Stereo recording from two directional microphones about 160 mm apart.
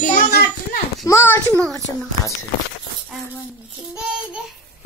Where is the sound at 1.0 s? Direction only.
15° left (ahead or behind).